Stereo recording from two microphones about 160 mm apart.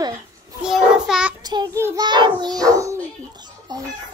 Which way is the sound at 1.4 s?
25° right (ahead or behind).